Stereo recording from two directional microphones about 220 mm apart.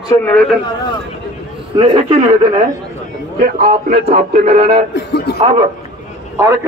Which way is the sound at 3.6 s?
45° right (ahead or behind).